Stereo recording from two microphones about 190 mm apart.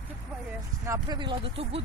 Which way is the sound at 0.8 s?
20° right (ahead or behind).